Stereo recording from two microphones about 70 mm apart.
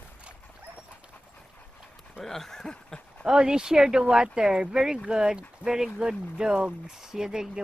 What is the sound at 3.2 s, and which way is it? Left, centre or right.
Speech, centre.